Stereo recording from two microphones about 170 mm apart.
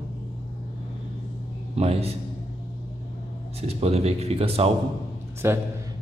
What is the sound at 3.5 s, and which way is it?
A man's voice, 35° right (ahead or behind).